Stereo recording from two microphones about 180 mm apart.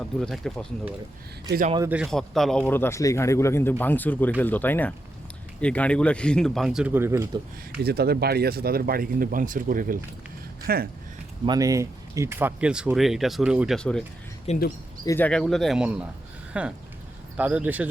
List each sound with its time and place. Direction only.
0.2 s speech: centre (ahead or behind)
1.9 s a man's voice: centre (ahead or behind)
7.9 s speech: 60° right (ahead or behind)
11.4 s speech: 20° right (ahead or behind); by 14.0 s 5° left (ahead or behind)
14.5 s speech: 35° left (ahead or behind)
15.0 s a man's voice: 15° left (ahead or behind)
15.3 s speech: centre (ahead or behind)